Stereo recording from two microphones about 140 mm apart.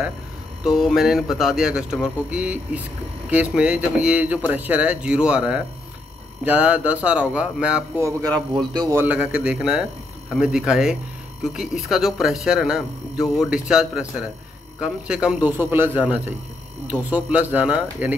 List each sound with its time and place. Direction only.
0.7 s speech: centre (ahead or behind)
8.0 s a man's voice: 30° right (ahead or behind)
8.9 s speech: 10° right (ahead or behind)